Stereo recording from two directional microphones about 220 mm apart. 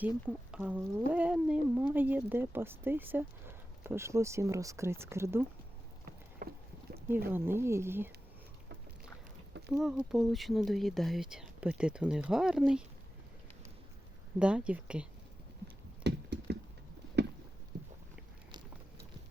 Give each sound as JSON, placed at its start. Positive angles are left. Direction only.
{"t": 0.5, "sound": "speech", "side_deg": -5}
{"t": 6.4, "sound": "rowboat", "side_deg": -45}
{"t": 7.3, "sound": "speech", "side_deg": -10}
{"t": 9.6, "sound": "speech", "side_deg": -5}
{"t": 14.3, "sound": "speech", "side_deg": -5}
{"t": 16.0, "sound": "a sound", "side_deg": -50}